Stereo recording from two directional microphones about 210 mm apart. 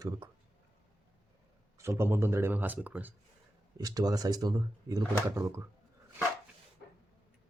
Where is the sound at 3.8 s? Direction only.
15° right (ahead or behind).